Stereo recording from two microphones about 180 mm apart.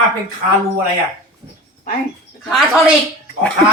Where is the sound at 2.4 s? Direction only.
Centre (ahead or behind).